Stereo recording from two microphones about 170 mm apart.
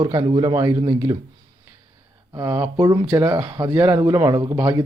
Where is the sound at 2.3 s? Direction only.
15° right (ahead or behind).